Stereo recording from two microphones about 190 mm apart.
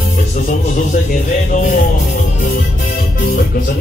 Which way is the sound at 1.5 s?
50° left (ahead or behind).